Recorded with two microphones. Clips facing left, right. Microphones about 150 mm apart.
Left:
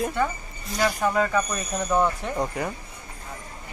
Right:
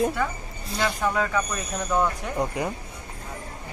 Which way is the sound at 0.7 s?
Centre (ahead or behind).